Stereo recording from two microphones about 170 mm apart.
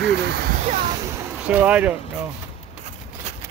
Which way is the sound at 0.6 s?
45° right (ahead or behind).